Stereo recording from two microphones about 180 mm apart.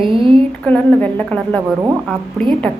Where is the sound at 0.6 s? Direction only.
10° left (ahead or behind).